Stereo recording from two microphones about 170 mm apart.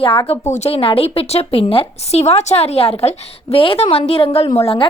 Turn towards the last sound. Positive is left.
turn(degrees=35)  # may be behind; listen again after turning